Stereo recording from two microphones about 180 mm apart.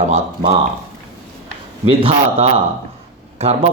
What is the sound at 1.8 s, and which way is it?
Speech, 30° right (ahead or behind).